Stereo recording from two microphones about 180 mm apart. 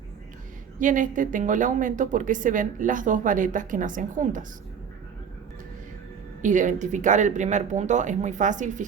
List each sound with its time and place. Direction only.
0.8 s a woman's voice: 45° right (ahead or behind)
6.4 s a woman's voice: 45° right (ahead or behind)